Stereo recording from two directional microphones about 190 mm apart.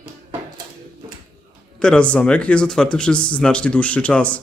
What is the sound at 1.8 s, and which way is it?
Speech, 5° left (ahead or behind).